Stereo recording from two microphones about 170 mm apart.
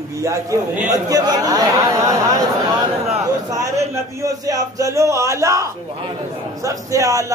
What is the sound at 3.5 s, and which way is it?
Speech, 20° right (ahead or behind).